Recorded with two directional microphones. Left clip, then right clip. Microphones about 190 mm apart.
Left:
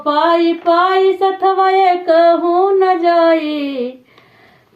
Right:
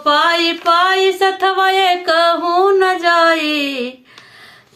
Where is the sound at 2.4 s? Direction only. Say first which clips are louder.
Even; 20° right (ahead or behind).